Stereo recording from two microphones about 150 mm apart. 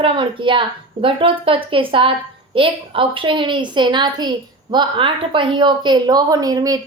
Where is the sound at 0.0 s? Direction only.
35° right (ahead or behind).